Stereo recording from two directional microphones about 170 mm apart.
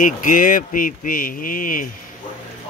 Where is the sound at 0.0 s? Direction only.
50° left (ahead or behind).